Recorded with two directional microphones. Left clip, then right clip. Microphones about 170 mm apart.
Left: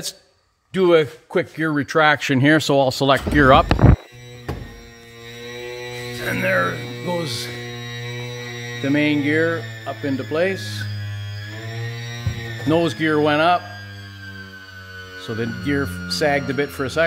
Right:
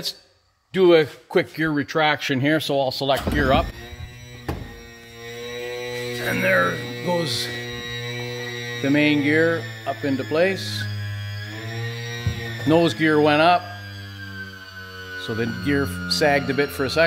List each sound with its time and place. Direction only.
0.7 s speech: 15° left (ahead or behind)
1.6 s speech: 25° left (ahead or behind)
1.9 s speech: 40° left (ahead or behind); by 3.6 s 80° left
6.2 s speech: 10° left (ahead or behind)
8.7 s speech: centre (ahead or behind)
12.6 s speech: centre (ahead or behind)
15.1 s speech: centre (ahead or behind)